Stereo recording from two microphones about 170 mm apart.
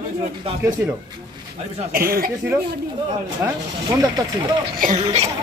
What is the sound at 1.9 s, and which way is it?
Speech, 60° right (ahead or behind).